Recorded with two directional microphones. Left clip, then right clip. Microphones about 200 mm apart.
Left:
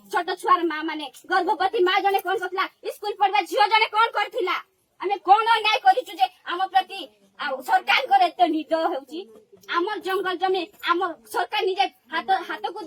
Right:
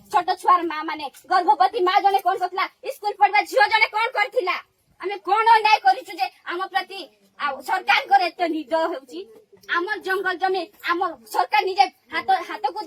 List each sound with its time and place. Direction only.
0.1 s a woman's voice: 45° left (ahead or behind)
11.3 s a woman's voice: 25° left (ahead or behind)